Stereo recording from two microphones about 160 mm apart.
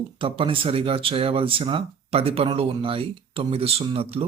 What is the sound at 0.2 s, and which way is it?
Speech, 35° right (ahead or behind).